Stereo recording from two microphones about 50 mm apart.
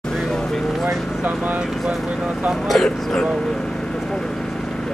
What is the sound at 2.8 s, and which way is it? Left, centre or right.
Vehicle, centre.